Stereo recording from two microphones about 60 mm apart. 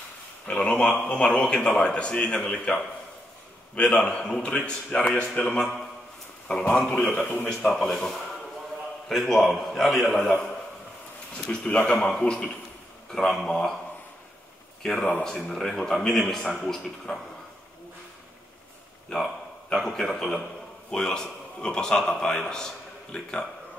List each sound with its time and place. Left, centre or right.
0.5 s a man's voice: centre
3.9 s a man's voice: centre
5.6 s a man's voice: centre
6.4 s a man's voice: centre
11.4 s a man's voice: centre
14.8 s a man's voice: centre
19.0 s a man's voice: centre